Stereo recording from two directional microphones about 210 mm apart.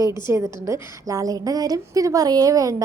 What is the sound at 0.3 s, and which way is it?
A woman's voice, 15° right (ahead or behind).